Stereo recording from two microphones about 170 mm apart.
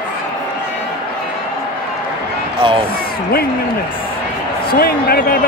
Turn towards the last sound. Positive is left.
turn(degrees=65)  # may be behind; listen again after turning